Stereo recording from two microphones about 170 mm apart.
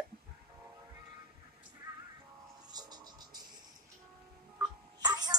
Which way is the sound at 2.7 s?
25° right (ahead or behind).